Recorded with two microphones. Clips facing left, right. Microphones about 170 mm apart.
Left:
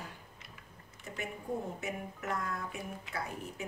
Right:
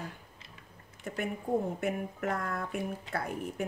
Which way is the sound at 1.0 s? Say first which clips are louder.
Right 5 dB; 55° right (ahead or behind).